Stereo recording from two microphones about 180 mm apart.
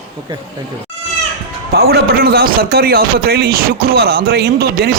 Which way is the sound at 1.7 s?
60° right (ahead or behind).